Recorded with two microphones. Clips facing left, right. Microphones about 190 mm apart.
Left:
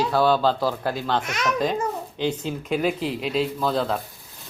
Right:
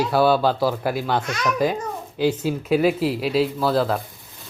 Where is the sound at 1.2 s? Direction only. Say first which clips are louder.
Right 1 dB; 20° left (ahead or behind).